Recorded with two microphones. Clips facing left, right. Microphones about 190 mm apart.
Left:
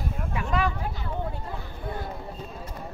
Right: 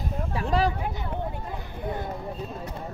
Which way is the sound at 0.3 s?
35° right (ahead or behind).